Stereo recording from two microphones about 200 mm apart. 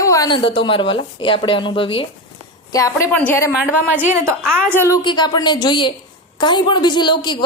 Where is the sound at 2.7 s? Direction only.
15° left (ahead or behind).